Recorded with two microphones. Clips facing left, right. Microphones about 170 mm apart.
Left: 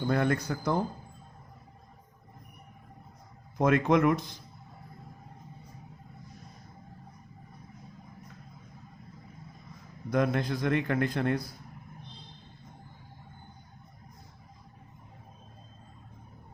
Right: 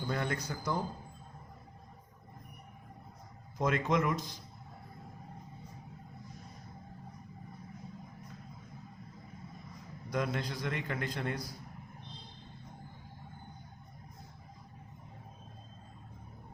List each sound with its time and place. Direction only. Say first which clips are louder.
0.1 s a man's voice: left 8 dB; 55° left (ahead or behind)
3.6 s a man's voice: left 7 dB; 60° left (ahead or behind)
10.1 s a man's voice: left 7 dB; 55° left (ahead or behind)